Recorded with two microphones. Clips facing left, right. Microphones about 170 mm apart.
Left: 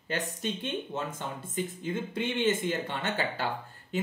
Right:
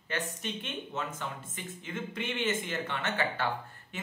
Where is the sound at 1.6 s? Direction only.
30° left (ahead or behind).